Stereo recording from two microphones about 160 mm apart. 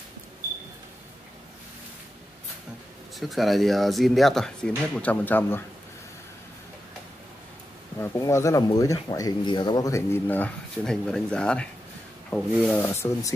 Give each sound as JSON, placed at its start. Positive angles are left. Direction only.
{"t": 3.2, "sound": "speech", "side_deg": 0}
{"t": 8.0, "sound": "speech", "side_deg": 20}